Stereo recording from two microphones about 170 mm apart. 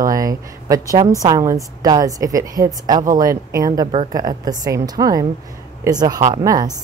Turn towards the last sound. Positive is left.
turn(degrees=-20)  # may be behind; listen again after turning